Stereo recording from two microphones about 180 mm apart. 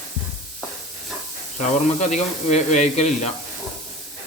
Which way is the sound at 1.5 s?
40° left (ahead or behind).